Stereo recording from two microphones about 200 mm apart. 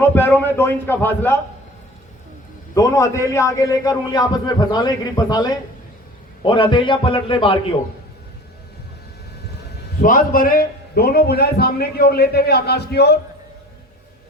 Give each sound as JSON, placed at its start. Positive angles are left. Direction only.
{"t": 0.1, "sound": "a man's voice", "side_deg": 10}
{"t": 2.7, "sound": "a man's voice", "side_deg": 15}
{"t": 10.0, "sound": "a man's voice", "side_deg": 45}